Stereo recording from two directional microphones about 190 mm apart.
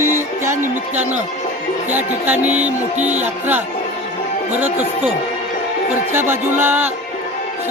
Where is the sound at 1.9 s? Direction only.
10° right (ahead or behind).